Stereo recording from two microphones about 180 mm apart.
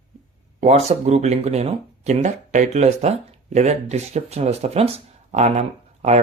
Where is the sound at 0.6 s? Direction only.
40° right (ahead or behind).